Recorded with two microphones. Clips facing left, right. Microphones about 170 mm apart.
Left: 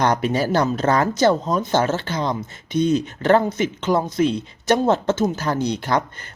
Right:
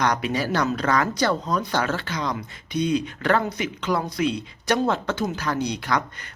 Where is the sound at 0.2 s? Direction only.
45° left (ahead or behind).